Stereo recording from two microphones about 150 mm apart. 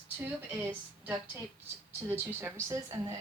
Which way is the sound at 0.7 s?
10° right (ahead or behind).